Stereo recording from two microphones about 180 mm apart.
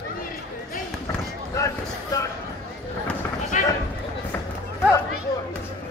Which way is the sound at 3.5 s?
40° left (ahead or behind).